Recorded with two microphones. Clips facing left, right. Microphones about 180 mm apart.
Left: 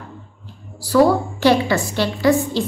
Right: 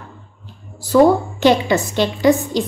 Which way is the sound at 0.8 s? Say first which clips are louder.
Right 2 dB; 20° right (ahead or behind).